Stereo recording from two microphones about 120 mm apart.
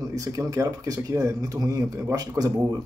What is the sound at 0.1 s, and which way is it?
Speech, 25° right (ahead or behind).